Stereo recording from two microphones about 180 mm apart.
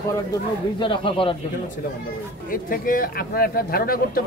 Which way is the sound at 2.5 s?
50° left (ahead or behind).